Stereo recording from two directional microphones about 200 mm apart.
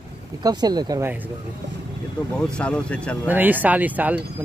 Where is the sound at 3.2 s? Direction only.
10° right (ahead or behind).